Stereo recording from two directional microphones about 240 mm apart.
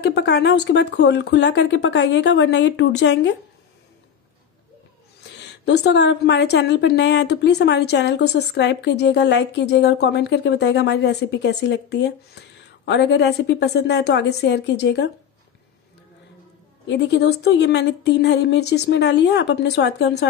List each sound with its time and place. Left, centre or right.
0.0 s a woman's voice: left
5.4 s a woman's voice: left
16.8 s a woman's voice: left